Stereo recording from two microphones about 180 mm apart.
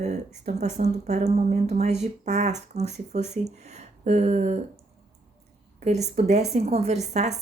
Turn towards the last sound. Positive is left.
turn(degrees=-40)  # may be behind; listen again after turning